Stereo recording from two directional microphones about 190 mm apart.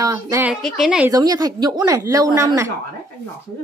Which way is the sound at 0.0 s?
15° right (ahead or behind).